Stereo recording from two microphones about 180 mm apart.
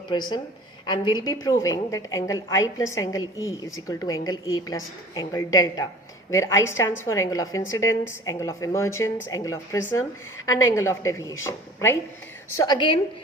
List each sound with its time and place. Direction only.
0.1 s a woman's voice: 25° left (ahead or behind)